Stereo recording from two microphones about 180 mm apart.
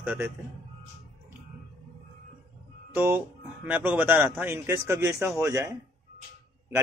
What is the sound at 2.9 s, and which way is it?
A man's voice, 10° right (ahead or behind).